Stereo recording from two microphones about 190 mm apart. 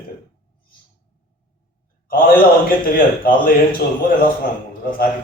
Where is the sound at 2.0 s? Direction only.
50° left (ahead or behind).